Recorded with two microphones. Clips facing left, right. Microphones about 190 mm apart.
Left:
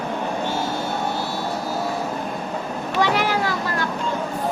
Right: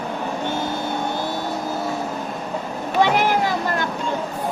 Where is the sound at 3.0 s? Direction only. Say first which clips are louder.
Right 3 dB; 20° right (ahead or behind).